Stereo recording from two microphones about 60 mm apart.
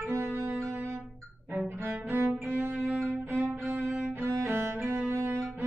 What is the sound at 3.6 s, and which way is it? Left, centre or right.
Music, right.